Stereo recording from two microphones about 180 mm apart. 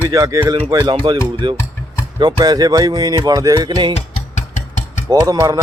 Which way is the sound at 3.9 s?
40° left (ahead or behind).